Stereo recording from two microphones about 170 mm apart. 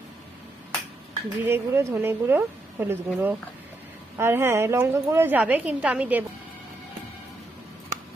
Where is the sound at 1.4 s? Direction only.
15° right (ahead or behind).